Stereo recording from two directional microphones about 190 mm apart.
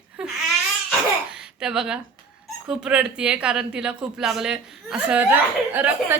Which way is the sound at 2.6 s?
5° right (ahead or behind).